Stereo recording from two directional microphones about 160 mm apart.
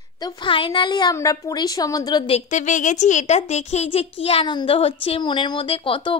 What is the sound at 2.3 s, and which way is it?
A woman's voice, 50° left (ahead or behind).